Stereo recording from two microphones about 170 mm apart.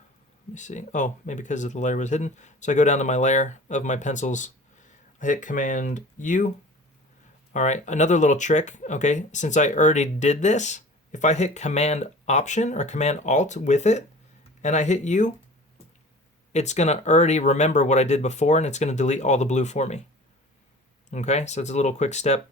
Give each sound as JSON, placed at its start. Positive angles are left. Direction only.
{"t": 0.5, "sound": "speech", "side_deg": 45}
{"t": 7.5, "sound": "speech", "side_deg": 45}
{"t": 16.5, "sound": "speech", "side_deg": 40}
{"t": 21.1, "sound": "speech", "side_deg": 45}